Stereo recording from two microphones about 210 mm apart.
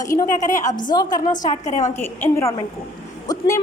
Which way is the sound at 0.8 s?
20° left (ahead or behind).